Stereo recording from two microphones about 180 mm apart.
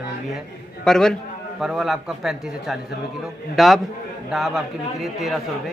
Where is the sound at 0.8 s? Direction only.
5° left (ahead or behind).